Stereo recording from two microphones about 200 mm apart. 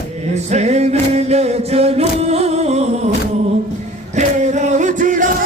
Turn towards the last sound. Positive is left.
turn(degrees=-40)  # may be behind; listen again after turning